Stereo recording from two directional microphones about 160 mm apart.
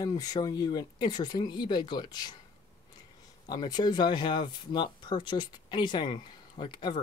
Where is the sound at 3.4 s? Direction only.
25° left (ahead or behind).